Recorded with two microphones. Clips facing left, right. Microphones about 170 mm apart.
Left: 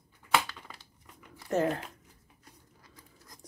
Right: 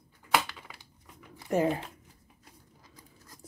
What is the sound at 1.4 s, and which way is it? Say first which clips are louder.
Speech: right 2 dB; 10° right (ahead or behind).